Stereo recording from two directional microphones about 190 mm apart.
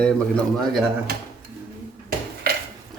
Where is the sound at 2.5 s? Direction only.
55° right (ahead or behind).